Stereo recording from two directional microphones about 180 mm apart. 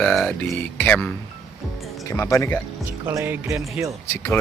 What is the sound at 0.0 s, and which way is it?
Speech, 5° left (ahead or behind).